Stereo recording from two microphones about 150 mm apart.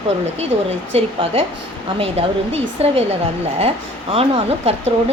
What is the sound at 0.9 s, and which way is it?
Speech, 40° right (ahead or behind).